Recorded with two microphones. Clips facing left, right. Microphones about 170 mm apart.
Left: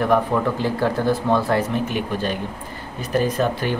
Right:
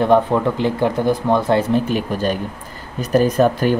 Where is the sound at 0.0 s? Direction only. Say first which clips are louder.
Right 4 dB; 25° right (ahead or behind).